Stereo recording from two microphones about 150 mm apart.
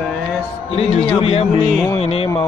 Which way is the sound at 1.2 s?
40° left (ahead or behind).